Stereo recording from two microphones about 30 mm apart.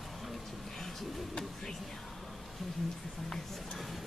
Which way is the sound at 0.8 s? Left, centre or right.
Centre.